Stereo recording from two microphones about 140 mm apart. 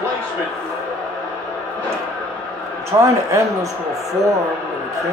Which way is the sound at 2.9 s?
20° right (ahead or behind).